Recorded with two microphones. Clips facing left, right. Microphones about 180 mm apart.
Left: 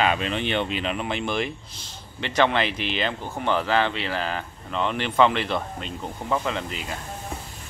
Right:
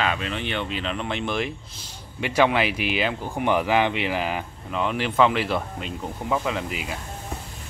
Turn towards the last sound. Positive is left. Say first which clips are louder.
# right 1 dB
turn(degrees=-5)  # may be behind; listen again after turning